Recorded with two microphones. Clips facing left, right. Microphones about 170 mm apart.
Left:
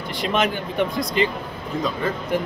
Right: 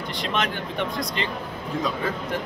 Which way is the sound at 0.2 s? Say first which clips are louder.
Left 5 dB; 5° left (ahead or behind).